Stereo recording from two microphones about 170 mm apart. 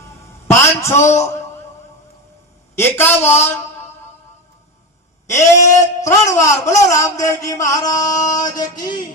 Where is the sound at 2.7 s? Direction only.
15° left (ahead or behind).